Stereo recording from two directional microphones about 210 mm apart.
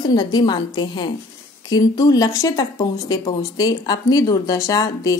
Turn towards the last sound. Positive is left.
turn(degrees=15)  # may be behind; listen again after turning